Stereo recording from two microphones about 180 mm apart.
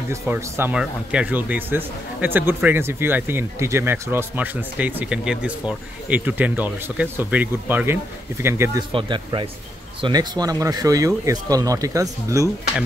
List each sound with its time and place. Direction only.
0.1 s speech: 10° right (ahead or behind)
8.9 s speech: 30° right (ahead or behind)